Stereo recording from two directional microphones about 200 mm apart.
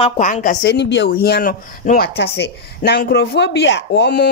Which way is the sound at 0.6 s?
60° left (ahead or behind).